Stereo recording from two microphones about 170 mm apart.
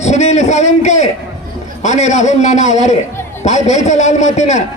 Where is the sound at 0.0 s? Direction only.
40° left (ahead or behind).